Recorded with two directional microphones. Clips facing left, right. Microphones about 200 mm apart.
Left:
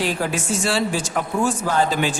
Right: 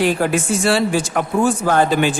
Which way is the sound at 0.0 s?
60° right (ahead or behind).